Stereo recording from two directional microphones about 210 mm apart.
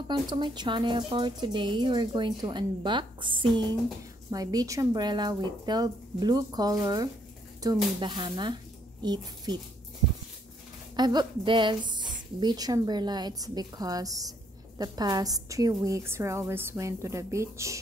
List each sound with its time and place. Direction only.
0.1 s speech: 20° right (ahead or behind)
11.0 s a woman's voice: 20° right (ahead or behind)